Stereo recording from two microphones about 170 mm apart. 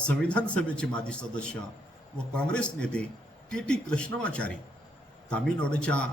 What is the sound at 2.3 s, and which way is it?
A man's voice, 5° left (ahead or behind).